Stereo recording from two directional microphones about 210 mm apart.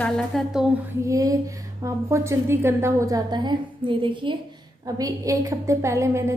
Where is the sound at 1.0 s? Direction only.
15° right (ahead or behind).